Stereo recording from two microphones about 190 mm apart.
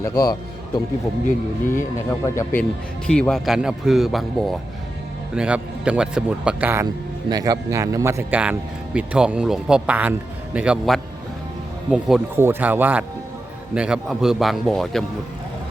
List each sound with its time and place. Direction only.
0.0 s a man's voice: 20° left (ahead or behind); by 6.8 s 10° right (ahead or behind)
7.3 s a man's voice: 20° right (ahead or behind); by 15.0 s centre (ahead or behind)